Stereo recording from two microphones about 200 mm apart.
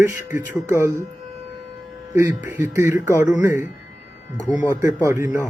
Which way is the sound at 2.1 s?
10° right (ahead or behind).